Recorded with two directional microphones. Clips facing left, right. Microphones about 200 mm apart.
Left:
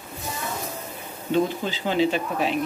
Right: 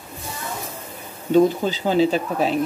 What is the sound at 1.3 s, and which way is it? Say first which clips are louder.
Speech: right 7 dB; 40° right (ahead or behind).